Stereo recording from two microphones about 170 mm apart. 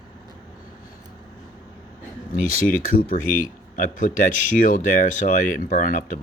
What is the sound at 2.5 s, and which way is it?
Speech, 55° left (ahead or behind).